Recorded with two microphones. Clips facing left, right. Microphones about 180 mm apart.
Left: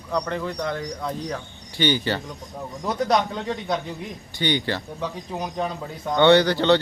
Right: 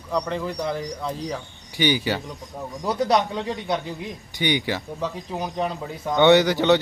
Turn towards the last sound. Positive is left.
turn(degrees=-15)  # may be behind; listen again after turning